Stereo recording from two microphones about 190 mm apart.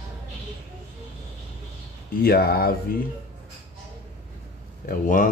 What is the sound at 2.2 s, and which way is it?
Speech, 55° left (ahead or behind).